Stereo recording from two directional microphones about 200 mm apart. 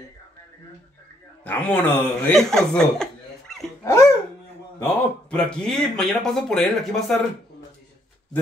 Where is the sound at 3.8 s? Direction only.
15° left (ahead or behind).